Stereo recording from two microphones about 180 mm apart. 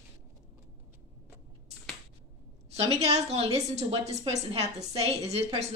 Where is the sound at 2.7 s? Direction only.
35° right (ahead or behind).